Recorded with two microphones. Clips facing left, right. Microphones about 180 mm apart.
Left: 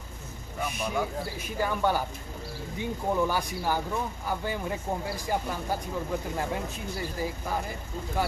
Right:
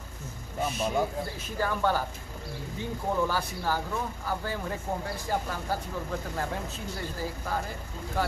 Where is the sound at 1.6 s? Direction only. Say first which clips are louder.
Left 1 dB; 15° left (ahead or behind).